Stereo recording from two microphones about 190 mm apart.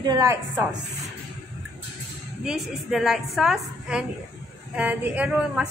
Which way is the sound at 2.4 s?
Centre (ahead or behind).